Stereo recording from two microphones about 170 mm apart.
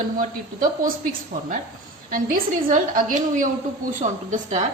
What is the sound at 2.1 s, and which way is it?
A woman's voice, 55° right (ahead or behind).